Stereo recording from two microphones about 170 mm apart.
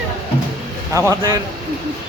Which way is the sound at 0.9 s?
20° right (ahead or behind).